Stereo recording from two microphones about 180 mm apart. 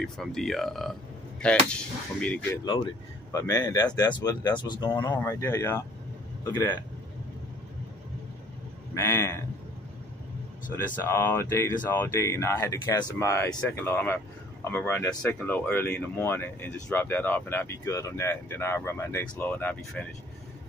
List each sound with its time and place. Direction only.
0.0 s speech: centre (ahead or behind)
3.3 s speech: 20° left (ahead or behind)
8.9 s speech: 15° left (ahead or behind)
11.1 s speech: 10° left (ahead or behind)